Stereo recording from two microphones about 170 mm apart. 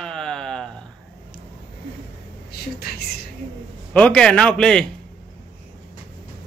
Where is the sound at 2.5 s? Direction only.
70° left (ahead or behind).